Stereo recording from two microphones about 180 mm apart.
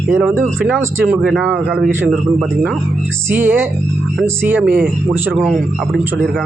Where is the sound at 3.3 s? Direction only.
10° right (ahead or behind).